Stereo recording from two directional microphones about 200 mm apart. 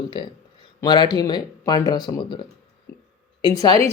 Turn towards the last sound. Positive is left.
turn(degrees=20)  # may be behind; listen again after turning